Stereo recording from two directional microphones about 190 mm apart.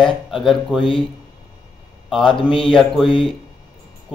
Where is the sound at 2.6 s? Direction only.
Centre (ahead or behind).